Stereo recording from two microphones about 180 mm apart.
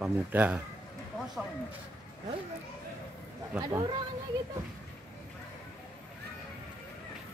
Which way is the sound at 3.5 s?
5° right (ahead or behind).